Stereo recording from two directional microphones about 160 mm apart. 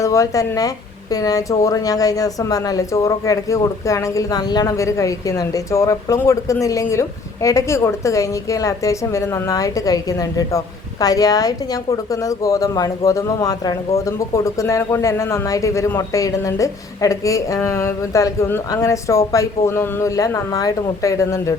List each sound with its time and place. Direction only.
0.0 s speech: 20° left (ahead or behind)